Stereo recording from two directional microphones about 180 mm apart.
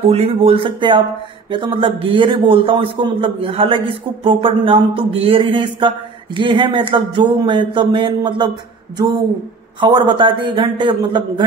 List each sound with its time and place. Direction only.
0.0 s a man's voice: 35° right (ahead or behind)